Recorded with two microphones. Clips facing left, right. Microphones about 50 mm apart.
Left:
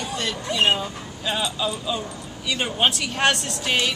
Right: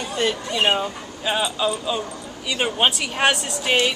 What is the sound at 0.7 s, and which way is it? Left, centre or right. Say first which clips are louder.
Speech: right 4 dB; right.